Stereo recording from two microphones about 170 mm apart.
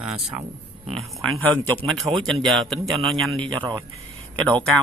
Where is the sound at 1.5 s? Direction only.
5° left (ahead or behind).